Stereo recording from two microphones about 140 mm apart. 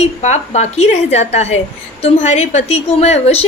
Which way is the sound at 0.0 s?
55° left (ahead or behind).